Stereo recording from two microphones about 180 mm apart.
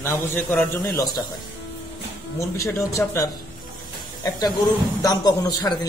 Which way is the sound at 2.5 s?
15° left (ahead or behind).